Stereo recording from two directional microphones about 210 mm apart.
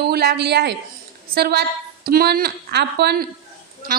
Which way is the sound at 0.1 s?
50° right (ahead or behind).